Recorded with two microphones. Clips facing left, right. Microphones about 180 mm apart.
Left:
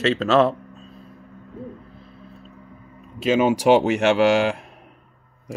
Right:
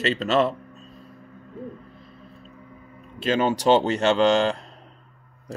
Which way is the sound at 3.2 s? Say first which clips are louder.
Left 3 dB; 10° left (ahead or behind).